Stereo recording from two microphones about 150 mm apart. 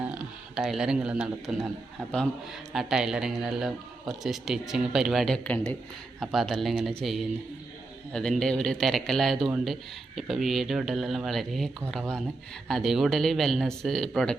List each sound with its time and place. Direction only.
0.0 s speech: 5° right (ahead or behind)
2.7 s speech: 5° right (ahead or behind)